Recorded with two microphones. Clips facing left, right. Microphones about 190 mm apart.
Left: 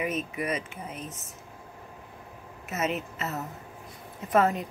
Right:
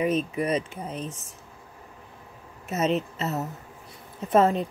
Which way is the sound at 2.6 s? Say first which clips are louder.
Right 5 dB; 30° right (ahead or behind).